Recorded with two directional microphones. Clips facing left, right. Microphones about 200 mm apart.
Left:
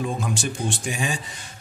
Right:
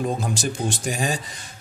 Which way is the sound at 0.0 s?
40° right (ahead or behind).